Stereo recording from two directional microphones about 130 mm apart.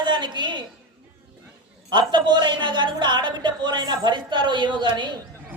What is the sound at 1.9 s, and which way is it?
A woman's voice, 35° right (ahead or behind).